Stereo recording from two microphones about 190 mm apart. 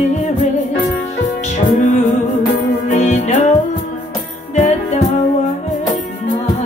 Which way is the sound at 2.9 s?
40° left (ahead or behind).